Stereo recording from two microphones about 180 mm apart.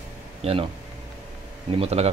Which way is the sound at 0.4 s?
35° right (ahead or behind).